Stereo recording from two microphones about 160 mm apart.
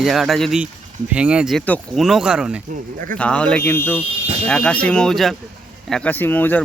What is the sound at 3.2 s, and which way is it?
Speech, 10° left (ahead or behind).